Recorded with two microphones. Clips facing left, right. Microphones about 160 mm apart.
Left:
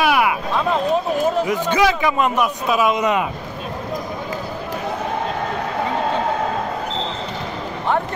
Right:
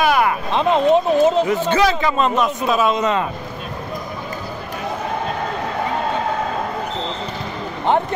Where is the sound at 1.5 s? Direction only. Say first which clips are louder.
Right 1 dB; 15° left (ahead or behind).